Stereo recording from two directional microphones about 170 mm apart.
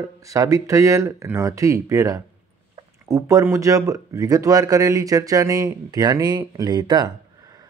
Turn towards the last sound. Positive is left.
turn(degrees=-25)  # may be behind; listen again after turning